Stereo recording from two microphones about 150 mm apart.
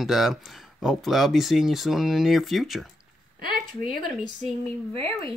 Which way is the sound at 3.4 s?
85° right.